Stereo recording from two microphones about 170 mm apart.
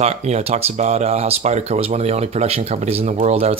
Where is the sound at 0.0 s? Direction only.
40° right (ahead or behind).